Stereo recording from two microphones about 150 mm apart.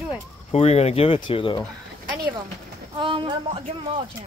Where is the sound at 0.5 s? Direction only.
45° left (ahead or behind).